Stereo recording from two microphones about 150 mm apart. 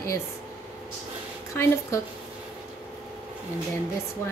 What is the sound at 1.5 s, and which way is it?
Speech, 20° left (ahead or behind).